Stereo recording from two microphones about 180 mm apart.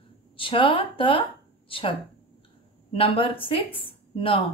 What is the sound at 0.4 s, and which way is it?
A woman's voice, 30° left (ahead or behind).